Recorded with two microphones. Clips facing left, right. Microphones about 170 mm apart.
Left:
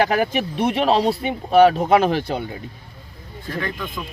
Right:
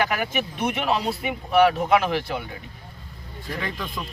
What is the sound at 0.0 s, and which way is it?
Speech, 35° left (ahead or behind).